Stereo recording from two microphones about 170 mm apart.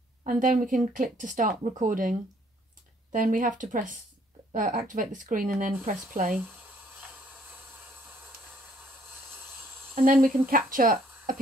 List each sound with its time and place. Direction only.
0.2 s speech: 50° right (ahead or behind)
8.3 s a sound: 60° right (ahead or behind)
10.2 s speech: 55° right (ahead or behind)